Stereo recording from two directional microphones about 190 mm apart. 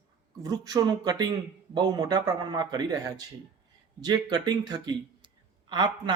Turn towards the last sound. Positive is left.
turn(degrees=-25)  # may be behind; listen again after turning